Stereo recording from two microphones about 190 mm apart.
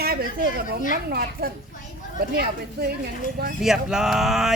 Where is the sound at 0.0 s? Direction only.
55° right (ahead or behind).